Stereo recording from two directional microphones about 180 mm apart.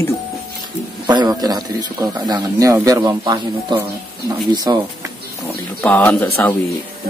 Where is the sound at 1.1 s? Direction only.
20° right (ahead or behind).